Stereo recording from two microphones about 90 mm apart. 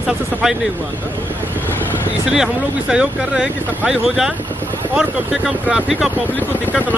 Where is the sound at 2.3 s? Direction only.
5° right (ahead or behind).